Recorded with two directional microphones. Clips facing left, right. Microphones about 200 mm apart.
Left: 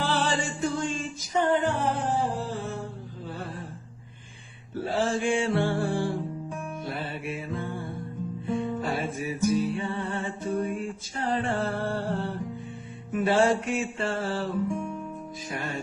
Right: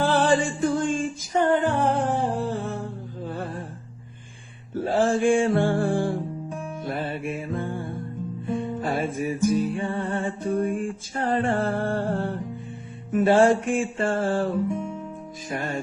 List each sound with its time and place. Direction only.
0.0 s music: 50° right (ahead or behind)
4.7 s music: 45° right (ahead or behind)